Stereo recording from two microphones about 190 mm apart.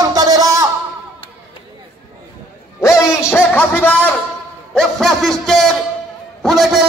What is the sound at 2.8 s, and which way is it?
Music, 15° left (ahead or behind).